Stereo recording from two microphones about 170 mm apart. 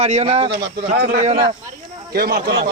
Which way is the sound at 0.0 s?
40° right (ahead or behind).